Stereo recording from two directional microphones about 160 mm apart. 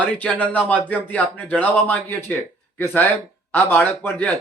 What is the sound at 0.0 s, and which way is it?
Speech, 10° left (ahead or behind).